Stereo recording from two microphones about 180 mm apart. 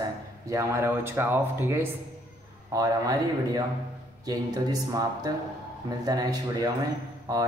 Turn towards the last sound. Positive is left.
turn(degrees=-20)  # may be behind; listen again after turning